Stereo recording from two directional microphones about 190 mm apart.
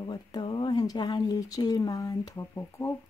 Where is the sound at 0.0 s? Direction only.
20° left (ahead or behind).